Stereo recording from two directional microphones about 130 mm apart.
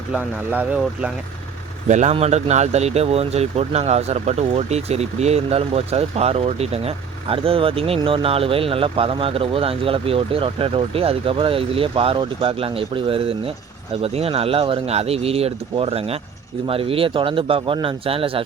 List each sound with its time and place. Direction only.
1.9 s speech: 65° right (ahead or behind)
2.1 s speech: 55° right (ahead or behind)